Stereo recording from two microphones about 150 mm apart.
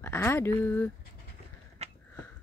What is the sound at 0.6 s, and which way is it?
Speech, 10° left (ahead or behind).